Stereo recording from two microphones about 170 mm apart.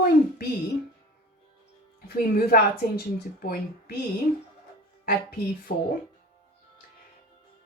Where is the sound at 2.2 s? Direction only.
60° left (ahead or behind).